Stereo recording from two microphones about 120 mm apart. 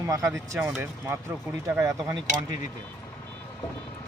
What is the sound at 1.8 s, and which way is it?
Speech, 25° right (ahead or behind).